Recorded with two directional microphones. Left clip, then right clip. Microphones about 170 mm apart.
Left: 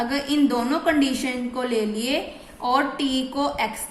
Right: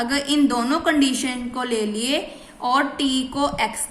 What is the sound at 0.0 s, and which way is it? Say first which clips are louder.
A woman's voice: right 2 dB; 25° right (ahead or behind).